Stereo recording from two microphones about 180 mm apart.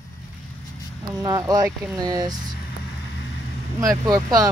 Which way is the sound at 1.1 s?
20° right (ahead or behind).